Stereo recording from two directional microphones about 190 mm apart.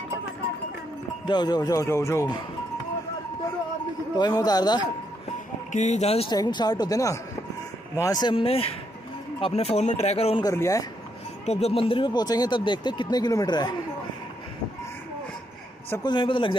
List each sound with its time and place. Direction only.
1.2 s speech: 25° left (ahead or behind)
4.2 s speech: 20° left (ahead or behind)
5.7 s speech: 40° left (ahead or behind)
6.3 s speech: 20° left (ahead or behind)
10.4 s a man's voice: 15° left (ahead or behind)
11.4 s speech: 35° left (ahead or behind)
16.0 s speech: 25° left (ahead or behind)